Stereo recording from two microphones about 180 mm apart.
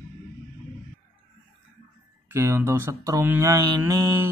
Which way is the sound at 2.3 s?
15° right (ahead or behind).